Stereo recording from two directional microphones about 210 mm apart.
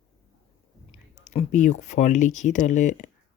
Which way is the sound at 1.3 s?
35° left (ahead or behind).